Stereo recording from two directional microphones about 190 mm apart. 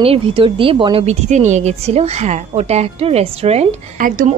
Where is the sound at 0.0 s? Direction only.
30° right (ahead or behind).